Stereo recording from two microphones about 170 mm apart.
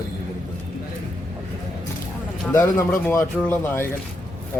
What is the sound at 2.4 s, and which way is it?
Speech, 15° left (ahead or behind).